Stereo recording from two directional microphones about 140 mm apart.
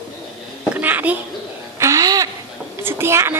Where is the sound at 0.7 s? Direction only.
10° right (ahead or behind).